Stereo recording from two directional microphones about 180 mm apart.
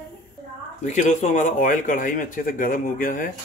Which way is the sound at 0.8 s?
40° left (ahead or behind).